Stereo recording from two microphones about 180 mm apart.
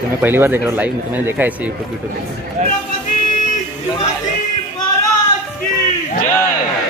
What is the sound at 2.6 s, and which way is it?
Speech, 40° right (ahead or behind).